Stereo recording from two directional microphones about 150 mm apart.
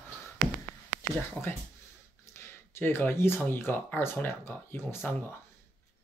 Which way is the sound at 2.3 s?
15° left (ahead or behind).